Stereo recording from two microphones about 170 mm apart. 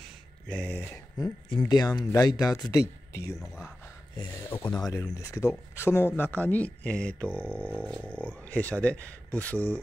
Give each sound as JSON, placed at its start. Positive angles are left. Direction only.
{"t": 0.5, "sound": "speech", "side_deg": 10}
{"t": 3.3, "sound": "speech", "side_deg": 0}
{"t": 4.5, "sound": "speech", "side_deg": 15}